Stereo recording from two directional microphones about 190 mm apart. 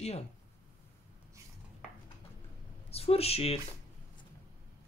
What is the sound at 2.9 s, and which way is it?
Speech, 30° left (ahead or behind).